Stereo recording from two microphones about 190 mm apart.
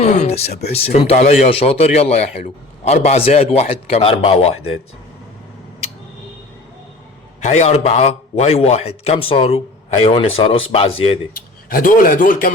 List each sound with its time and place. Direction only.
0.0 s speech: 35° left (ahead or behind)
7.4 s speech: 35° left (ahead or behind)
11.3 s speech: 45° left (ahead or behind)